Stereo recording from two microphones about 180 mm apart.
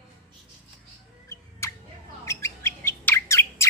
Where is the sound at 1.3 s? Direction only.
15° left (ahead or behind).